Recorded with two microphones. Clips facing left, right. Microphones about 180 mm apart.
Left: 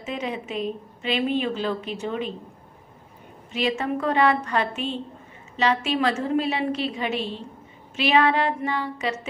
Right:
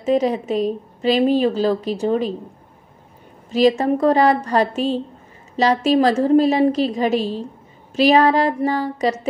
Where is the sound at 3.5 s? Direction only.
40° right (ahead or behind).